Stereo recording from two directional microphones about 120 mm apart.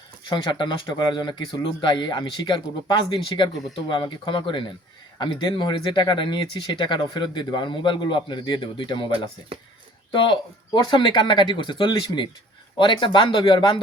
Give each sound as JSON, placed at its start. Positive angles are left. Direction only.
{"t": 0.3, "sound": "speech", "side_deg": 40}